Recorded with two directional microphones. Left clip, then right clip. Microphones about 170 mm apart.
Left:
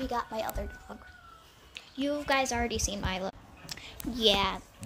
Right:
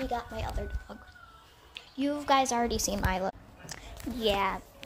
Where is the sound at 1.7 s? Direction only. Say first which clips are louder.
Even; 10° left (ahead or behind).